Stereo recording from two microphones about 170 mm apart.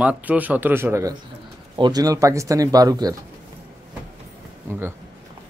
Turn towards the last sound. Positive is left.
turn(degrees=-15)  # may be behind; listen again after turning